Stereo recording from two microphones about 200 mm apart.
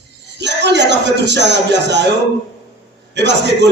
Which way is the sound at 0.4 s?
60° right (ahead or behind).